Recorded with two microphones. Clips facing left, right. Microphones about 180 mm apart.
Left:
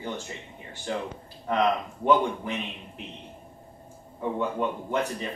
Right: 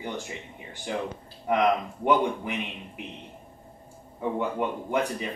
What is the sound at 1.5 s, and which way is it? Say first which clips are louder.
Speech: right 1 dB; 15° right (ahead or behind).